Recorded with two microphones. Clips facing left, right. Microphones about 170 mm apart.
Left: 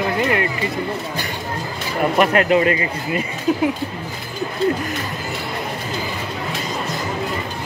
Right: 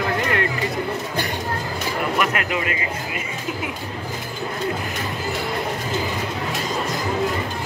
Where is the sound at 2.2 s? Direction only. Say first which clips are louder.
Left 8 dB; 35° left (ahead or behind).